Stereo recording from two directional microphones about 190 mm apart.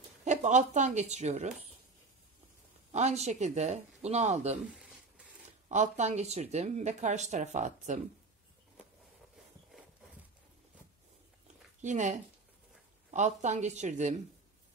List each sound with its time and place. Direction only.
0.2 s speech: 40° right (ahead or behind)
2.9 s speech: 35° right (ahead or behind)
5.7 s speech: 40° right (ahead or behind)
11.8 s speech: 40° right (ahead or behind)